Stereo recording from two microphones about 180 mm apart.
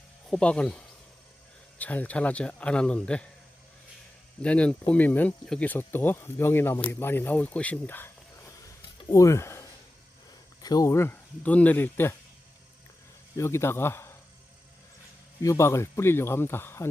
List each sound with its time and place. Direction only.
0.3 s speech: 5° left (ahead or behind)
1.8 s speech: 10° left (ahead or behind)
4.4 s speech: 5° left (ahead or behind)
13.3 s speech: 15° left (ahead or behind)
15.4 s speech: 15° left (ahead or behind)